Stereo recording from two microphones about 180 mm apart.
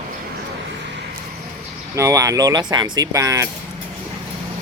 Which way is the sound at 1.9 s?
15° right (ahead or behind).